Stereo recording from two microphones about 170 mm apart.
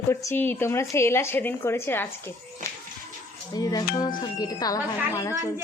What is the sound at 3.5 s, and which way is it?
Speech, 25° left (ahead or behind).